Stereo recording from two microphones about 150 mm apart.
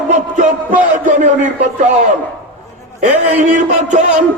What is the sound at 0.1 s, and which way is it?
A man's voice, 55° right (ahead or behind).